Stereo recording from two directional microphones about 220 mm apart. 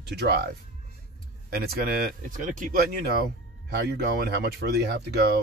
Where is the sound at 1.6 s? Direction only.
40° right (ahead or behind).